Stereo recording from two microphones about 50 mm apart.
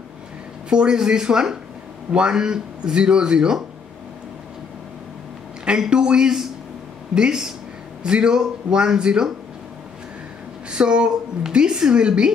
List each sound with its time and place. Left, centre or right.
0.7 s a woman's voice: centre
5.7 s a woman's voice: centre
10.7 s a woman's voice: centre